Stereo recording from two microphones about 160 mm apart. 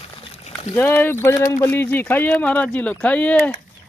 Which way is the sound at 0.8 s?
10° left (ahead or behind).